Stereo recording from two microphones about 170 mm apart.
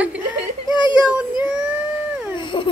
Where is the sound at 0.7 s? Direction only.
25° left (ahead or behind).